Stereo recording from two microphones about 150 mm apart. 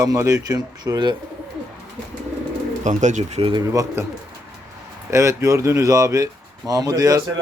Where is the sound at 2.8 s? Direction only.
50° right (ahead or behind).